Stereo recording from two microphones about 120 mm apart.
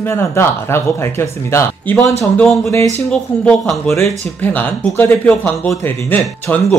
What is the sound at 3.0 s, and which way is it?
Speech, 5° left (ahead or behind).